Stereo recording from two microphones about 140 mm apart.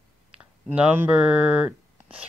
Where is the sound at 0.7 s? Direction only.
10° right (ahead or behind).